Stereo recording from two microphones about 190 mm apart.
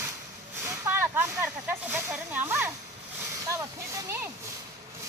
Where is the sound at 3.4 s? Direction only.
15° right (ahead or behind).